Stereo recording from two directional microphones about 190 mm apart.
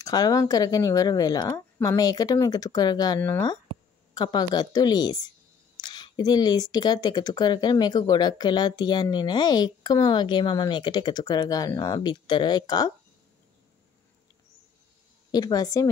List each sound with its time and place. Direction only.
0.0 s speech: 20° left (ahead or behind)
15.3 s speech: 20° left (ahead or behind)